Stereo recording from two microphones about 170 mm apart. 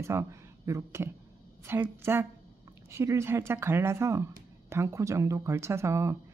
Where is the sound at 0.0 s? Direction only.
15° right (ahead or behind).